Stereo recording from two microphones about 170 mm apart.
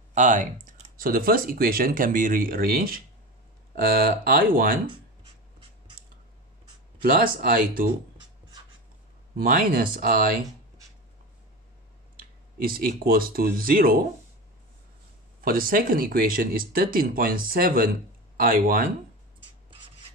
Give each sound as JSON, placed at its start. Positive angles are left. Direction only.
{"t": 0.1, "sound": "speech", "side_deg": -45}
{"t": 7.0, "sound": "speech", "side_deg": -55}
{"t": 9.4, "sound": "speech", "side_deg": -55}
{"t": 12.2, "sound": "speech", "side_deg": -60}
{"t": 15.4, "sound": "speech", "side_deg": -55}